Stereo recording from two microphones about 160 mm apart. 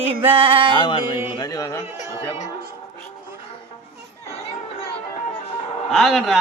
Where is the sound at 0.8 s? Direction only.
30° left (ahead or behind).